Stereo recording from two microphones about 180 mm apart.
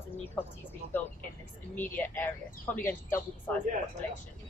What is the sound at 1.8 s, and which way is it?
Speech, 10° left (ahead or behind).